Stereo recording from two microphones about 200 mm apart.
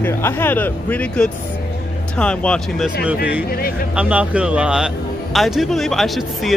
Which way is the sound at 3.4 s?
50° left (ahead or behind).